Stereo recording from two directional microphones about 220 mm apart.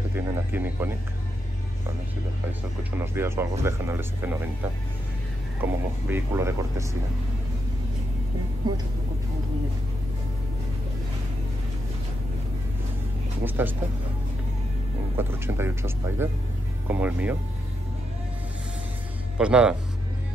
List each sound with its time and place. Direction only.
0.1 s music: 10° right (ahead or behind)
2.8 s speech: 10° right (ahead or behind)
5.6 s speech: 10° right (ahead or behind)
13.5 s speech: 10° right (ahead or behind)
15.1 s speech: 10° right (ahead or behind)
19.3 s speech: 5° right (ahead or behind)